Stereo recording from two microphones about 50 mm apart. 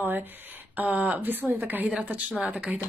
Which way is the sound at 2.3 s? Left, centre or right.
Centre.